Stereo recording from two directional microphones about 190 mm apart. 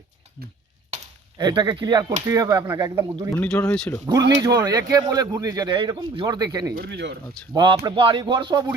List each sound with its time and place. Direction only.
0.9 s chop: 35° right (ahead or behind)
1.4 s a man's voice: 20° right (ahead or behind)
3.3 s speech: 10° left (ahead or behind)
4.2 s speech: 65° right (ahead or behind)
4.4 s a man's voice: 20° right (ahead or behind)
6.7 s speech: 60° right (ahead or behind)
7.5 s a man's voice: 25° right (ahead or behind)